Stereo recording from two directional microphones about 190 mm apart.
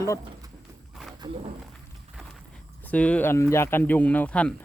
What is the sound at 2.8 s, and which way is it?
Speech, 5° left (ahead or behind).